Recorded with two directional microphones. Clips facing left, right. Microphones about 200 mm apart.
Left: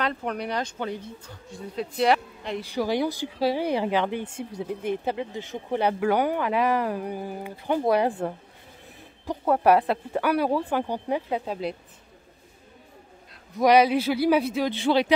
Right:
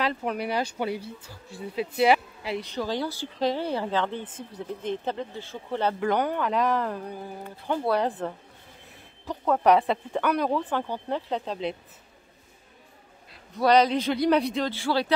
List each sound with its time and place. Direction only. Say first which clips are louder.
0.0 s speech: right 1 dB; 5° right (ahead or behind)
2.6 s speech: left 7 dB; 10° left (ahead or behind)
9.5 s speech: left 1 dB; 5° left (ahead or behind)
13.6 s speech: left 2 dB; 10° left (ahead or behind)
14.7 s speech: left 4 dB; 20° left (ahead or behind)